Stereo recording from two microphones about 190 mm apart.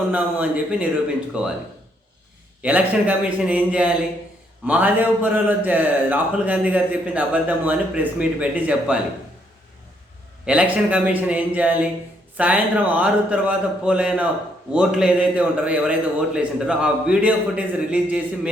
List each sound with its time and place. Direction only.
0.1 s a man's voice: 5° right (ahead or behind)
2.6 s speech: 5° right (ahead or behind)
10.4 s a man's voice: 5° right (ahead or behind)